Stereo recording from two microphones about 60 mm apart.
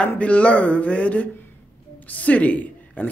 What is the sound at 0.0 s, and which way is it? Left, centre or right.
Speech, left.